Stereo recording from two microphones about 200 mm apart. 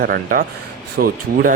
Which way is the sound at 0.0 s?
50° right (ahead or behind).